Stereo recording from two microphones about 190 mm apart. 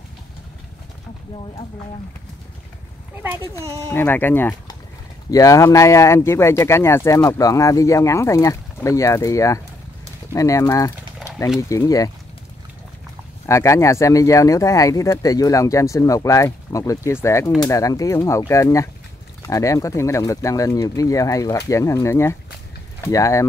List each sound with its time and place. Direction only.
3.6 s speech: 15° right (ahead or behind)
3.9 s speech: 10° left (ahead or behind)
11.2 s a sound: 15° left (ahead or behind)
11.7 s speech: 20° left (ahead or behind)
13.5 s speech: 15° left (ahead or behind)